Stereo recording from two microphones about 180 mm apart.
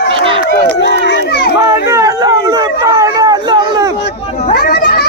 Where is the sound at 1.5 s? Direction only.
20° right (ahead or behind).